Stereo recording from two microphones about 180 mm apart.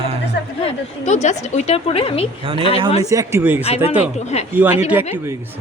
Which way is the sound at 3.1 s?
20° right (ahead or behind).